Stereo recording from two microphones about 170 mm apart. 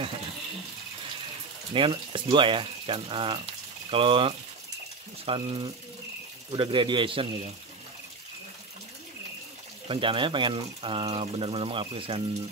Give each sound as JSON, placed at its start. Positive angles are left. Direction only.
{"t": 1.7, "sound": "a man's voice", "side_deg": -30}
{"t": 9.8, "sound": "speech", "side_deg": -30}